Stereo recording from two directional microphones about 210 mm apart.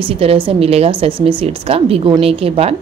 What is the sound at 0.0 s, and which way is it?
A woman's voice, 25° right (ahead or behind).